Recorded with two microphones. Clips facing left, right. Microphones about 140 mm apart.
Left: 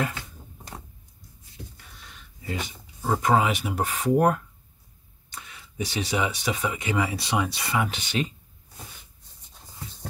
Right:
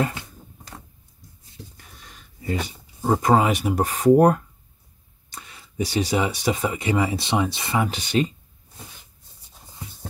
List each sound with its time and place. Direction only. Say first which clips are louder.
2.0 s a sound: right 6 dB; 40° right (ahead or behind)
3.0 s speech: right 4 dB; 35° right (ahead or behind)
7.7 s speech: right 4 dB; 35° right (ahead or behind)